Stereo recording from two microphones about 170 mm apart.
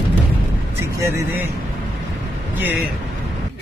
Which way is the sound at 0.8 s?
15° right (ahead or behind).